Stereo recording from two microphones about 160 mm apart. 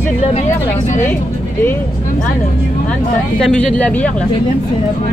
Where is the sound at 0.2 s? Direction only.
45° left (ahead or behind).